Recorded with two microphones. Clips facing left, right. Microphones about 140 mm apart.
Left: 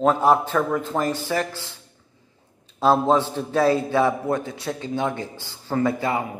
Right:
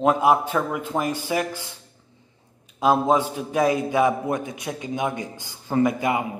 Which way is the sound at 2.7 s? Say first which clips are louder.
Left 1 dB; 15° right (ahead or behind).